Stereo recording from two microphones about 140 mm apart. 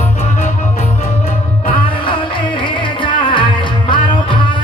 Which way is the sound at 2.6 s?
35° left (ahead or behind).